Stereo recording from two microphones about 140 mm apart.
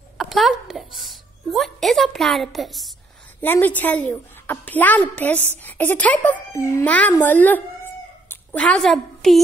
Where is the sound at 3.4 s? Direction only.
15° left (ahead or behind).